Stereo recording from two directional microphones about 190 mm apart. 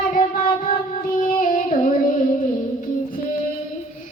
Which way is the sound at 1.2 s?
45° left (ahead or behind).